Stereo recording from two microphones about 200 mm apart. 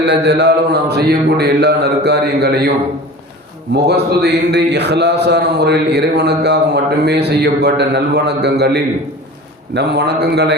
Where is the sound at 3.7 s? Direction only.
55° right (ahead or behind).